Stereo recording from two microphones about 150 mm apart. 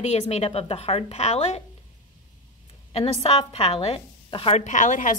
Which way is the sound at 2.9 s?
40° left (ahead or behind).